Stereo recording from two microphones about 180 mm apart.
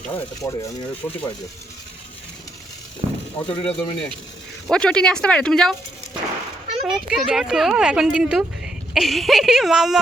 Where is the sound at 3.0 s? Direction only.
35° right (ahead or behind).